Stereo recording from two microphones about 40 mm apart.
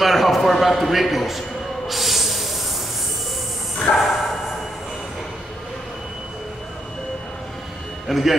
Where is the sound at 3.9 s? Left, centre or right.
Left.